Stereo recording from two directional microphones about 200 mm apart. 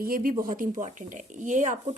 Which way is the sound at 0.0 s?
45° right (ahead or behind).